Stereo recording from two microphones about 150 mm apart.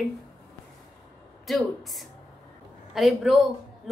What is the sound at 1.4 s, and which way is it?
A woman's voice, centre (ahead or behind).